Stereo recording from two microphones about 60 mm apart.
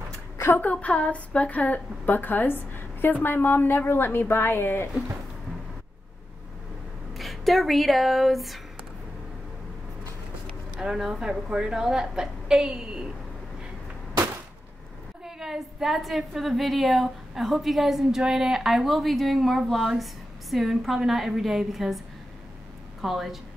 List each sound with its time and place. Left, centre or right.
0.6 s a woman's voice: left
7.2 s speech: centre
10.8 s a woman's voice: centre
15.2 s a woman's voice: centre
23.0 s a woman's voice: centre